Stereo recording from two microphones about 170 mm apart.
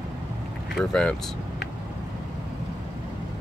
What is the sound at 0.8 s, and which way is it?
Speech, 5° left (ahead or behind).